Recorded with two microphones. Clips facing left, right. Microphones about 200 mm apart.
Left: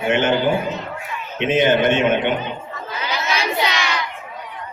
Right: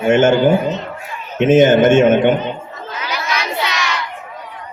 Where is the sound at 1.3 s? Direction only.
45° right (ahead or behind).